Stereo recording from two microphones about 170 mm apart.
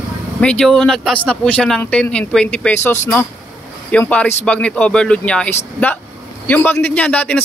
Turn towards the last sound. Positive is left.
turn(degrees=10)  # may be behind; listen again after turning